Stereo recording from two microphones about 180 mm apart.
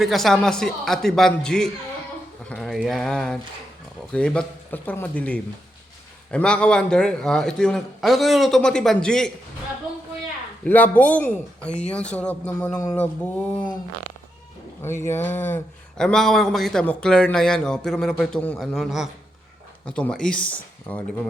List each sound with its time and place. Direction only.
0.0 s speech: centre (ahead or behind)
10.6 s speech: 10° left (ahead or behind)
12.7 s speech: 20° left (ahead or behind)
14.8 s speech: 15° left (ahead or behind)